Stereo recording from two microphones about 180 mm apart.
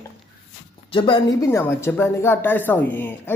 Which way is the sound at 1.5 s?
15° left (ahead or behind).